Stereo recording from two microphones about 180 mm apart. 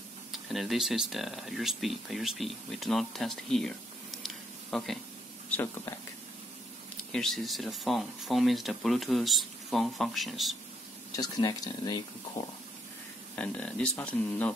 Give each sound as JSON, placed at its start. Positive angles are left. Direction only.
{"t": 0.3, "sound": "speech", "side_deg": 0}
{"t": 4.2, "sound": "a sound", "side_deg": 0}
{"t": 5.5, "sound": "speech", "side_deg": 10}
{"t": 7.1, "sound": "speech", "side_deg": 5}
{"t": 11.1, "sound": "speech", "side_deg": 20}
{"t": 13.4, "sound": "speech", "side_deg": 5}